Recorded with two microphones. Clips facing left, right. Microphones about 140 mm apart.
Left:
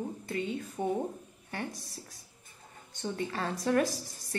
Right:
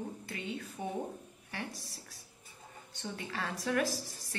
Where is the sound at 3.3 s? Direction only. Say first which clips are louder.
Left 3 dB; 40° left (ahead or behind).